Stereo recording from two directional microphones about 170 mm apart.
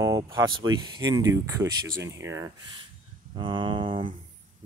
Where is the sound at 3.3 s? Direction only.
30° right (ahead or behind).